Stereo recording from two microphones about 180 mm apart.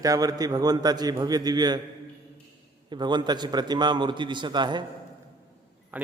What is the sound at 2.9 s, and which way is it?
A man's voice, 25° right (ahead or behind).